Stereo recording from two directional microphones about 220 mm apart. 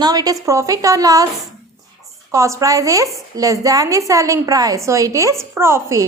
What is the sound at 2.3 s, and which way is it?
Speech, 15° right (ahead or behind).